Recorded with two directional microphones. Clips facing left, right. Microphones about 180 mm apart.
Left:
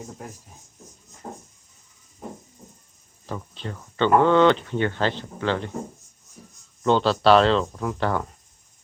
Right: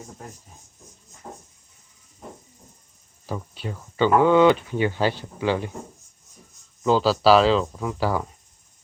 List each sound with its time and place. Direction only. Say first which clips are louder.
1.2 s a sound: left 3 dB; 20° left (ahead or behind)
3.2 s speech: right 2 dB; 10° right (ahead or behind)
6.8 s speech: even; 5° right (ahead or behind)